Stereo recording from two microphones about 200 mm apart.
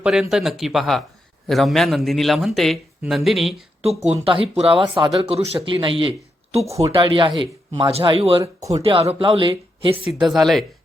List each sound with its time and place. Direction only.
0.0 s a man's voice: centre (ahead or behind)
3.8 s speech: 30° right (ahead or behind)
10.1 s a man's voice: centre (ahead or behind)